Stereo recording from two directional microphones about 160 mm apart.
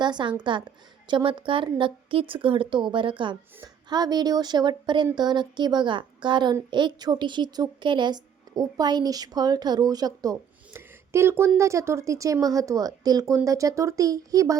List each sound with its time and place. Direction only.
0.0 s a woman's voice: 30° right (ahead or behind)